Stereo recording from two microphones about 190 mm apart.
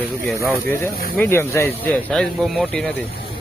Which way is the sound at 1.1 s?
10° left (ahead or behind).